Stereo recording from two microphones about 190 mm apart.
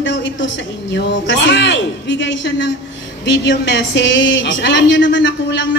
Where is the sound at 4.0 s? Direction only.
70° left (ahead or behind).